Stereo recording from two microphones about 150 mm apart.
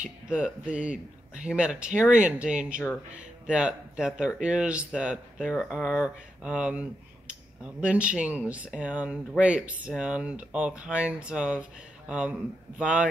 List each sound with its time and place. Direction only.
0.0 s speech: 5° right (ahead or behind)